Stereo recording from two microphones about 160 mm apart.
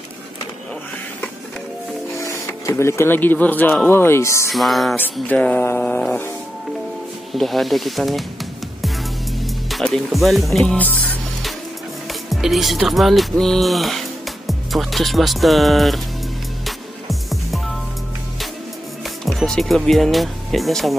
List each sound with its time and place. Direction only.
2.1 s speech: 20° left (ahead or behind)
4.5 s speech: centre (ahead or behind)
5.3 s music: 10° left (ahead or behind)
7.3 s speech: centre (ahead or behind)
9.7 s speech: centre (ahead or behind)
12.1 s speech: centre (ahead or behind)
16.6 s music: centre (ahead or behind)
19.2 s speech: centre (ahead or behind)